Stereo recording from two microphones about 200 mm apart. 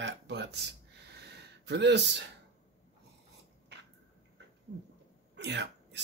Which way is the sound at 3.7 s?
60° right (ahead or behind).